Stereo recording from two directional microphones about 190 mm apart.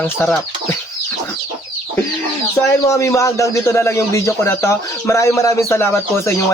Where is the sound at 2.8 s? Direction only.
15° left (ahead or behind).